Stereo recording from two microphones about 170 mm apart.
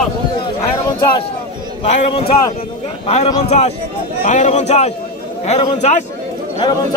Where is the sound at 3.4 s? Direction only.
40° left (ahead or behind).